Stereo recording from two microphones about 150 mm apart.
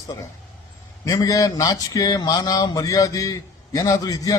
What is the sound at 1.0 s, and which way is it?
A man's voice, 20° left (ahead or behind).